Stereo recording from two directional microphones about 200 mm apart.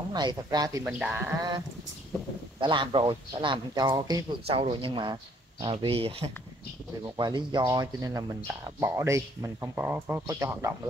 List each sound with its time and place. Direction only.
0.1 s speech: 20° right (ahead or behind)
0.8 s speech: 5° right (ahead or behind)
2.6 s speech: 25° right (ahead or behind)